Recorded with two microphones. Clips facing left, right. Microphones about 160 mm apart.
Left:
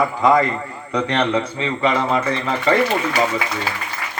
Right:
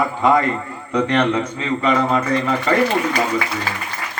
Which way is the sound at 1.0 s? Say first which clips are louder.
Right 1 dB; 35° left (ahead or behind).